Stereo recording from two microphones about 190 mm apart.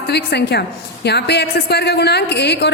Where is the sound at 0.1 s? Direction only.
60° left (ahead or behind).